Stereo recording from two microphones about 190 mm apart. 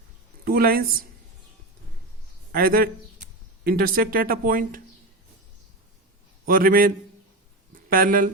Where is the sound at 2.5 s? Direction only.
50° right (ahead or behind).